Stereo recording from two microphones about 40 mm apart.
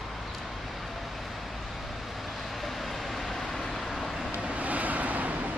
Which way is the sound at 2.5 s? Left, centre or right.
Centre.